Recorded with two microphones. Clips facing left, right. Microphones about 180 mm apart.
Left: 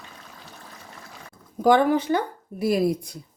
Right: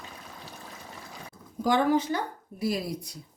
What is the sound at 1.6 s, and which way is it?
Speech, 60° left (ahead or behind).